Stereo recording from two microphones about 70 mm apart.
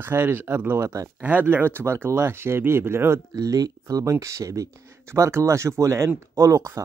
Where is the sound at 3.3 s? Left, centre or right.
Right.